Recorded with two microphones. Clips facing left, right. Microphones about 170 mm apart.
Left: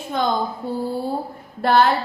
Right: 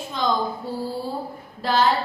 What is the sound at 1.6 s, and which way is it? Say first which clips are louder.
Speech: left 4 dB; 60° left (ahead or behind).